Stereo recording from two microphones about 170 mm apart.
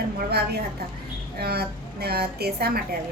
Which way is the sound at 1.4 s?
70° right (ahead or behind).